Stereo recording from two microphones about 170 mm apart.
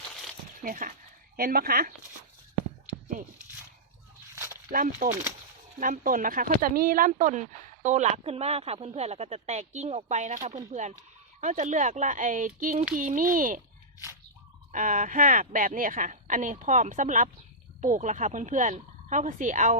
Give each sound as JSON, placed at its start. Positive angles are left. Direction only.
{"t": 0.6, "sound": "a woman's voice", "side_deg": -50}
{"t": 4.7, "sound": "a woman's voice", "side_deg": -55}
{"t": 14.7, "sound": "a woman's voice", "side_deg": -50}